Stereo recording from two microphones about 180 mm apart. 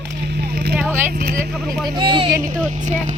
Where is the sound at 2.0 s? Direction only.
30° right (ahead or behind).